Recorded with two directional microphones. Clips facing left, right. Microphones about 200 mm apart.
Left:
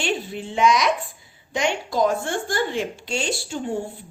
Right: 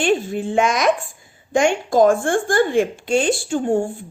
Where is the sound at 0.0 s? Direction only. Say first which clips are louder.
Right 8 dB; 50° right (ahead or behind).